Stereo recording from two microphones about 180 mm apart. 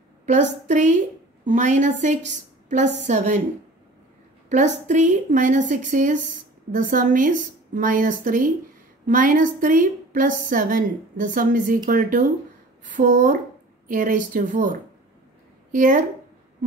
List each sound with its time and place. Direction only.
0.3 s a woman's voice: 45° right (ahead or behind)
4.5 s a woman's voice: 40° right (ahead or behind)